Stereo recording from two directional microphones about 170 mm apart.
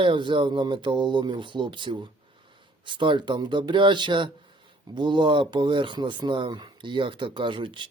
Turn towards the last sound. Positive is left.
turn(degrees=-30)  # may be behind; listen again after turning